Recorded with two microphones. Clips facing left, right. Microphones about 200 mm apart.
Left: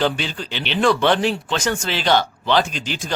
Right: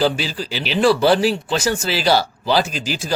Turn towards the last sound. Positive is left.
turn(degrees=-5)  # may be behind; listen again after turning